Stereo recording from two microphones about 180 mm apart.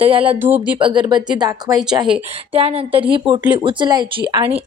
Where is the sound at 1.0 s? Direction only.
25° right (ahead or behind).